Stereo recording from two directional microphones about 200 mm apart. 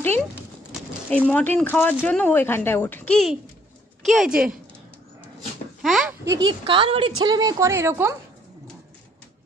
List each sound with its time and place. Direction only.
1.1 s a woman's voice: 5° left (ahead or behind)
5.8 s a sound: centre (ahead or behind)
6.2 s a woman's voice: 20° right (ahead or behind)